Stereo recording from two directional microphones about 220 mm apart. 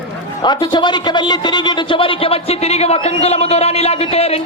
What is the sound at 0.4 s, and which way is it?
Speech, 20° left (ahead or behind).